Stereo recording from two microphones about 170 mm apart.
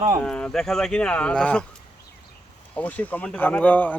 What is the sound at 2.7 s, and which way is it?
Speech, 10° left (ahead or behind).